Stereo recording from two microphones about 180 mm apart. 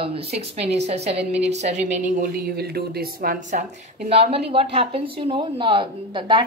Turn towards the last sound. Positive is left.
turn(degrees=-30)  # may be behind; listen again after turning